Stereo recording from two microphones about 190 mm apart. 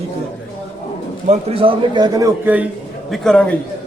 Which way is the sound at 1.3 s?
30° right (ahead or behind).